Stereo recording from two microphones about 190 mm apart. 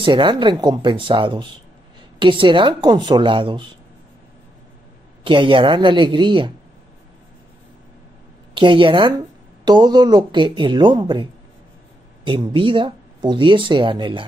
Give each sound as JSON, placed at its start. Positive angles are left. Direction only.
{"t": 0.0, "sound": "speech", "side_deg": -25}
{"t": 5.2, "sound": "speech", "side_deg": -25}
{"t": 8.5, "sound": "speech", "side_deg": -25}
{"t": 12.3, "sound": "speech", "side_deg": -25}